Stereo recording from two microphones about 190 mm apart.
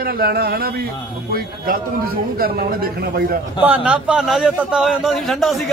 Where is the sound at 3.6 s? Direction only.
5° right (ahead or behind).